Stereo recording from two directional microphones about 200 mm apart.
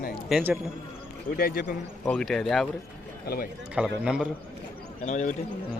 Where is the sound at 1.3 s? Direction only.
50° left (ahead or behind).